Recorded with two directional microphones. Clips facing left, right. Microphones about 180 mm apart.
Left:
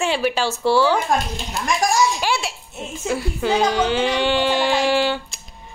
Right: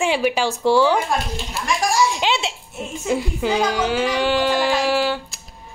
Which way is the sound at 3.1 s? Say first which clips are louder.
Even; 15° right (ahead or behind).